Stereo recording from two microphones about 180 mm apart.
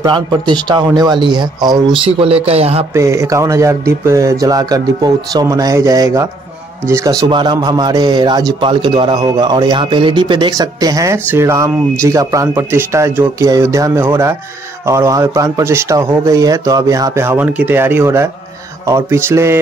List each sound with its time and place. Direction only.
0.0 s a man's voice: 25° right (ahead or behind)
2.9 s a man's voice: 15° right (ahead or behind)